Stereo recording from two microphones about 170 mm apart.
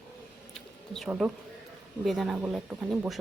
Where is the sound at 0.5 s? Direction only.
Centre (ahead or behind).